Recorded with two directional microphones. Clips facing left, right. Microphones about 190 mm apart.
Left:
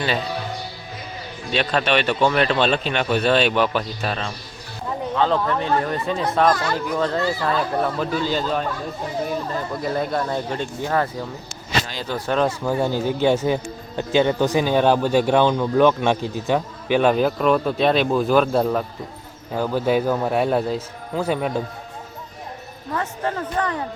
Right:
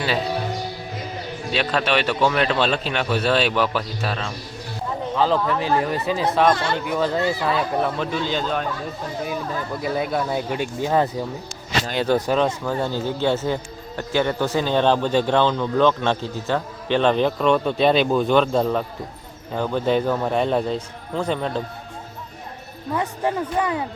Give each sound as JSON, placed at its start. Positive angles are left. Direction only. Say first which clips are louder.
{"t": 1.5, "sound": "a man's voice", "louder": "left 1 dB", "side_deg": -5}
{"t": 6.5, "sound": "speech", "louder": "even", "side_deg": -30}
{"t": 6.8, "sound": "a man's voice", "louder": "right 1 dB", "side_deg": -5}
{"t": 9.8, "sound": "speech", "louder": "even", "side_deg": -5}
{"t": 11.9, "sound": "speech", "louder": "right 8 dB", "side_deg": -55}
{"t": 12.3, "sound": "a man's voice", "louder": "even", "side_deg": 5}
{"t": 23.0, "sound": "speech", "louder": "right 2 dB", "side_deg": -10}